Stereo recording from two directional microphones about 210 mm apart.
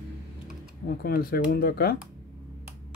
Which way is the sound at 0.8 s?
45° left (ahead or behind).